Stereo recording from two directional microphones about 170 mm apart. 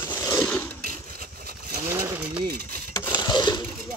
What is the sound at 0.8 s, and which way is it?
Vehicle, 55° right (ahead or behind).